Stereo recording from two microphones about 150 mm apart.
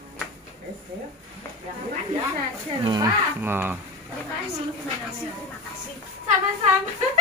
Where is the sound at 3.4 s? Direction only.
15° right (ahead or behind).